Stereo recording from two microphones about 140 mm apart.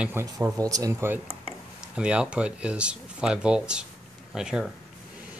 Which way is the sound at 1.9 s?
5° right (ahead or behind).